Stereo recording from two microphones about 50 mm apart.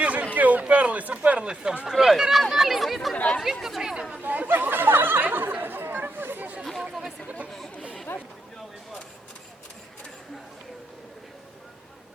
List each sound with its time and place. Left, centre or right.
0.0 s a sound: right
1.9 s speech: centre
3.2 s chatter: left
3.4 s speech: centre
4.2 s chatter: right
8.1 s chatter: left